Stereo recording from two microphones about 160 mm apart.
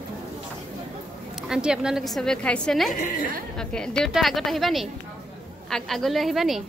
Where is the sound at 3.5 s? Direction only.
5° left (ahead or behind).